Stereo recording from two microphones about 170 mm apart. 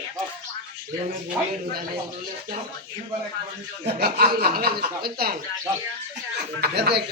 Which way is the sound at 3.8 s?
70° right (ahead or behind).